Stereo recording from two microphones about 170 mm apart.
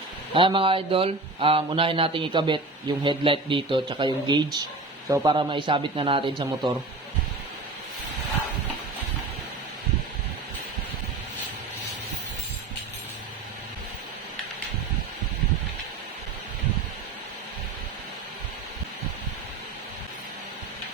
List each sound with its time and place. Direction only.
0.3 s a man's voice: 30° right (ahead or behind)